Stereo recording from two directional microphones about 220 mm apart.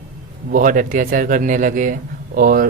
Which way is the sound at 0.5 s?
35° right (ahead or behind).